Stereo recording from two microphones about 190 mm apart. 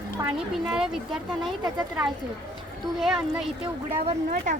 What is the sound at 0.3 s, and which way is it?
Speech, 5° right (ahead or behind).